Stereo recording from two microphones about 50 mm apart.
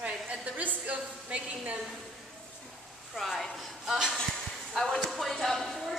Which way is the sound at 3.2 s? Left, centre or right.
Centre.